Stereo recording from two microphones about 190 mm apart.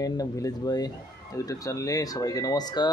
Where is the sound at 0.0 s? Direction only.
20° left (ahead or behind).